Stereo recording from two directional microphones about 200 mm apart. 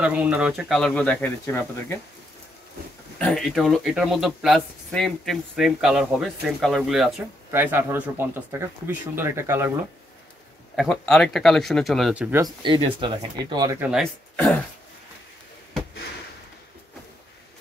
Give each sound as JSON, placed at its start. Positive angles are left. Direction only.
{"t": 0.0, "sound": "speech", "side_deg": -5}
{"t": 3.2, "sound": "speech", "side_deg": 5}
{"t": 10.8, "sound": "speech", "side_deg": 0}
{"t": 12.6, "sound": "speech", "side_deg": -25}
{"t": 13.7, "sound": "speech", "side_deg": -5}